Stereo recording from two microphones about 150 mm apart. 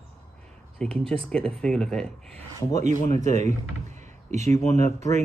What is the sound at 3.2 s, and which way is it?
Speech, 50° right (ahead or behind).